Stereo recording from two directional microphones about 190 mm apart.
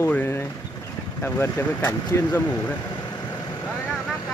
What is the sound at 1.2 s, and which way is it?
Speech, 10° left (ahead or behind).